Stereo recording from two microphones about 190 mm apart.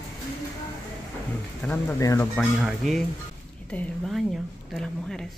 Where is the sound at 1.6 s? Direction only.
10° left (ahead or behind).